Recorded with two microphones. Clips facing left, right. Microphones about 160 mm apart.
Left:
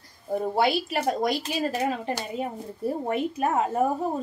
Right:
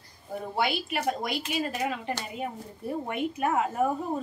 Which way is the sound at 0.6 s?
35° left (ahead or behind).